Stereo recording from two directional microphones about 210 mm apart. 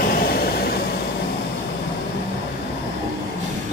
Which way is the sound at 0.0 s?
45° left (ahead or behind).